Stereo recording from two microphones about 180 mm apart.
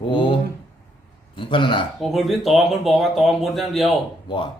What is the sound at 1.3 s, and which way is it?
Speech, 30° left (ahead or behind).